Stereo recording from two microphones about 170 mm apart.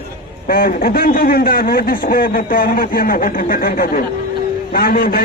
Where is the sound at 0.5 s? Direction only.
60° left (ahead or behind).